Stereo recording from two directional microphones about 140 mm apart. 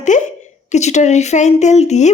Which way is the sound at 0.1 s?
60° left (ahead or behind).